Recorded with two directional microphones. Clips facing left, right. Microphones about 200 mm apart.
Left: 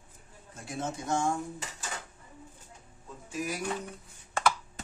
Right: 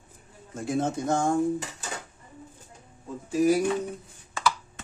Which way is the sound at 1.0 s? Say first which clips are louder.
Right 1 dB; 55° right (ahead or behind).